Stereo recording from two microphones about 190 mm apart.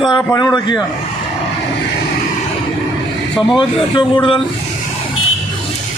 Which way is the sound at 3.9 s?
25° left (ahead or behind).